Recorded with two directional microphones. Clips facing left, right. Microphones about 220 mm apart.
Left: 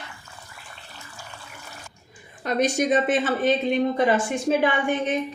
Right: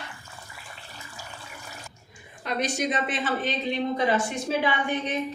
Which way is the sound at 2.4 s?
45° left (ahead or behind).